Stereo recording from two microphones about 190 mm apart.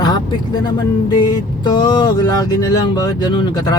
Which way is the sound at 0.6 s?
20° left (ahead or behind).